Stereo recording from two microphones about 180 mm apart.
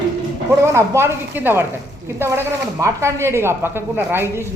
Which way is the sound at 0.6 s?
15° right (ahead or behind).